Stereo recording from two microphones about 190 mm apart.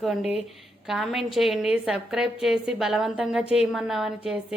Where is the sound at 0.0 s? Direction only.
Centre (ahead or behind).